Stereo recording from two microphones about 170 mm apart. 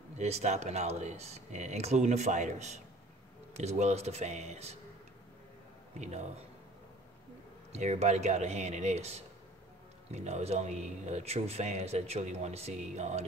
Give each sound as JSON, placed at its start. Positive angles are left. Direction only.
{"t": 0.2, "sound": "speech", "side_deg": -40}
{"t": 5.9, "sound": "speech", "side_deg": -40}
{"t": 7.7, "sound": "speech", "side_deg": -40}